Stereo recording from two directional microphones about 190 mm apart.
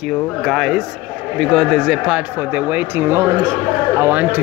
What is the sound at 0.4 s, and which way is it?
A man's voice, centre (ahead or behind).